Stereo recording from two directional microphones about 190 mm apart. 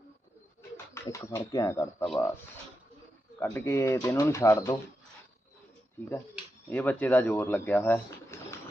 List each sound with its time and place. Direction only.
0.9 s speech: 15° left (ahead or behind)
3.4 s speech: 15° left (ahead or behind)
6.7 s speech: 10° left (ahead or behind)